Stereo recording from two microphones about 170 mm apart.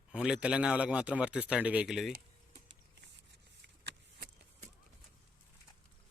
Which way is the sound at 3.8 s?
80° right.